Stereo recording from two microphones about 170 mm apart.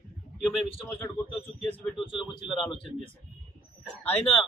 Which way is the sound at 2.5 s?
Centre (ahead or behind).